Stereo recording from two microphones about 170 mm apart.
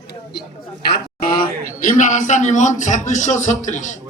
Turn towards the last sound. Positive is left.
turn(degrees=45)  # may be behind; listen again after turning